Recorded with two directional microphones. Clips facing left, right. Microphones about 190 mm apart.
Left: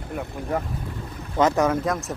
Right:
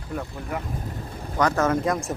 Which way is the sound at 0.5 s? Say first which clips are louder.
Left 5 dB; 40° left (ahead or behind).